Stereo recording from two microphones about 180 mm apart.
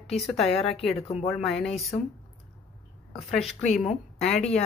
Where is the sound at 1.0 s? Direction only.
35° left (ahead or behind).